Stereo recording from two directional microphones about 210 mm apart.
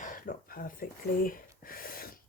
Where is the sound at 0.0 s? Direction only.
40° left (ahead or behind).